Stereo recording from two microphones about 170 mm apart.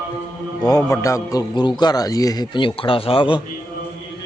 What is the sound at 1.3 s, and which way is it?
A man's voice, 25° left (ahead or behind).